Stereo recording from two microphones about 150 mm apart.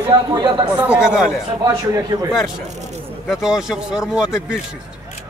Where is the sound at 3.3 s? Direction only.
5° right (ahead or behind).